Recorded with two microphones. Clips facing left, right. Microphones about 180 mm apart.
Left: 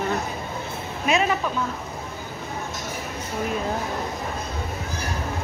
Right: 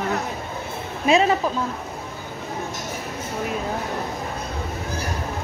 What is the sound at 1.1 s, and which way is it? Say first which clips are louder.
Speech: right 4 dB; 30° right (ahead or behind).